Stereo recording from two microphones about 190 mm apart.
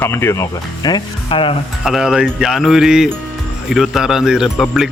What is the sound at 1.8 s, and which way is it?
Speech, centre (ahead or behind).